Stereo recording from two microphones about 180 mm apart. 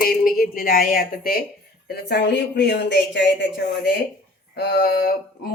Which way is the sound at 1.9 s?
65° left (ahead or behind).